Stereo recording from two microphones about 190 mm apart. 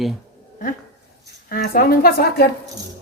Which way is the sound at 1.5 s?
50° left (ahead or behind).